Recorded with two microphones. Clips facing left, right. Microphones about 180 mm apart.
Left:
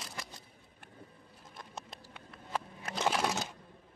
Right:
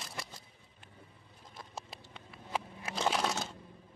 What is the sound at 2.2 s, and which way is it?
Vehicle, 5° right (ahead or behind).